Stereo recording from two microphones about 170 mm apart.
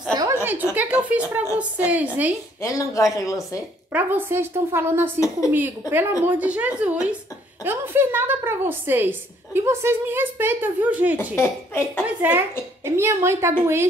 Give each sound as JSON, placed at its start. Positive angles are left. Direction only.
{"t": 0.1, "sound": "a sound", "side_deg": -20}
{"t": 0.4, "sound": "a sound", "side_deg": -10}
{"t": 0.7, "sound": "a woman's voice", "side_deg": -10}
{"t": 2.6, "sound": "speech", "side_deg": 20}
{"t": 3.9, "sound": "a woman's voice", "side_deg": -10}
{"t": 11.1, "sound": "speech", "side_deg": 15}
{"t": 12.2, "sound": "a woman's voice", "side_deg": -10}